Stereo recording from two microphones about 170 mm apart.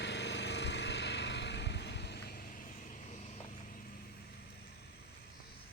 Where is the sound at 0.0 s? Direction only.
90° left; by 3.2 s 50° left (ahead or behind).